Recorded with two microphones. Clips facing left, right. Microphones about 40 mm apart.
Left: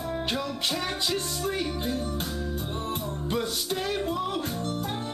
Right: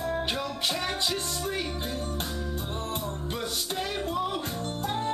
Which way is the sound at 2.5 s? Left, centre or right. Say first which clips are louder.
Left 1 dB; centre.